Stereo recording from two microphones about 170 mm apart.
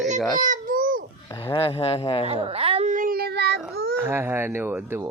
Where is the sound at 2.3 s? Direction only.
35° right (ahead or behind); by 3.9 s 70° right (ahead or behind).